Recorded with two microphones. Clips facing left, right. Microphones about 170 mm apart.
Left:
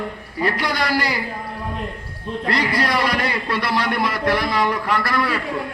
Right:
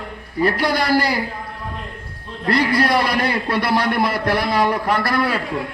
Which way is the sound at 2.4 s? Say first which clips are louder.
Right 4 dB; 55° right (ahead or behind).